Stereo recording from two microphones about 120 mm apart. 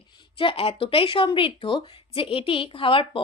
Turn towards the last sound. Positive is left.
turn(degrees=50)  # may be behind; listen again after turning